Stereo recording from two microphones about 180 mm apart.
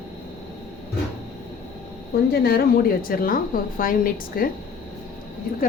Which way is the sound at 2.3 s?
60° left (ahead or behind).